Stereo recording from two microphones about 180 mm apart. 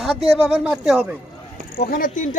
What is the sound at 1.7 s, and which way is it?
Speech, 55° left (ahead or behind).